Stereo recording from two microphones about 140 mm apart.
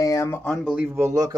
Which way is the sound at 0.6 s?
10° right (ahead or behind).